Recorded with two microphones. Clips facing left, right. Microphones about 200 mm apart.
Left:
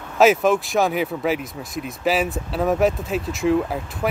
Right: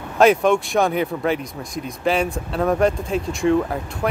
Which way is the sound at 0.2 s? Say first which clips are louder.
Right 1 dB; centre (ahead or behind).